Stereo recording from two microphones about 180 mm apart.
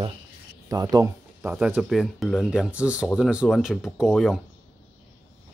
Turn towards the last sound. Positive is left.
turn(degrees=0)  # may be behind; listen again after turning